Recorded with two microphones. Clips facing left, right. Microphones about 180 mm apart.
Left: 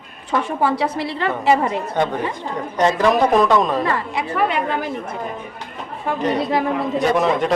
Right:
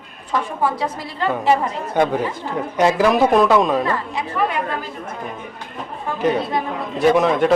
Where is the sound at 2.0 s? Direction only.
10° right (ahead or behind).